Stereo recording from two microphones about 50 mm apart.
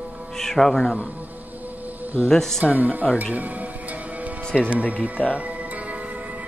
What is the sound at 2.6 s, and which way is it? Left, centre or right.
Speech, right.